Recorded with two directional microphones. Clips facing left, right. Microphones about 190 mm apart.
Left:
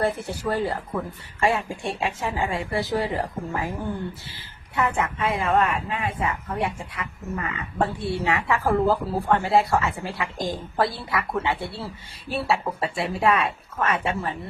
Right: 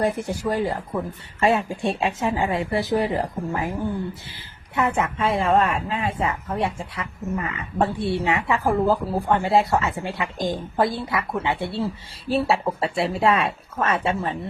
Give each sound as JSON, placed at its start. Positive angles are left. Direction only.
{"t": 0.0, "sound": "a woman's voice", "side_deg": -15}
{"t": 4.8, "sound": "a woman's voice", "side_deg": -20}